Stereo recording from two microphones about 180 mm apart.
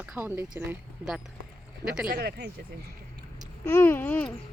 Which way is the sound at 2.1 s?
60° right (ahead or behind).